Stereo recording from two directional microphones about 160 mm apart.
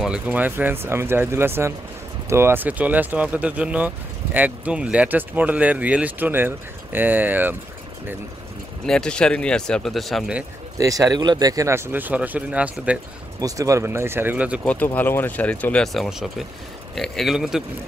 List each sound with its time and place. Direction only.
0.0 s speech: 5° right (ahead or behind)
8.8 s speech: 5° left (ahead or behind)
10.8 s speech: 20° right (ahead or behind)
13.4 s speech: 20° right (ahead or behind)
14.6 s speech: 10° left (ahead or behind)